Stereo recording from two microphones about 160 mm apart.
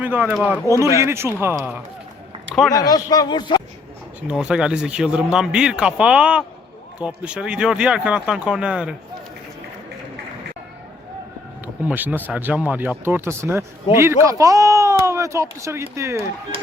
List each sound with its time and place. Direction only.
0.0 s speech: 10° right (ahead or behind)
0.7 s speech: 20° right (ahead or behind)
2.6 s speech: 25° left (ahead or behind)
4.3 s speech: 5° right (ahead or behind)
11.6 s speech: 10° right (ahead or behind)